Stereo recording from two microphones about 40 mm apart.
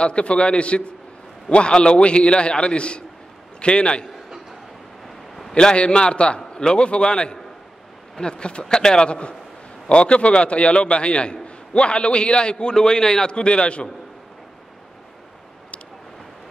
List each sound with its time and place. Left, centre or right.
0.0 s a man's voice: left
5.0 s a sound: centre
5.5 s a man's voice: left